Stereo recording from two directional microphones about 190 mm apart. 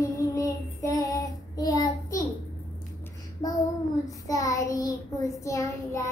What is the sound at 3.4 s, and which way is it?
Speech, 20° left (ahead or behind).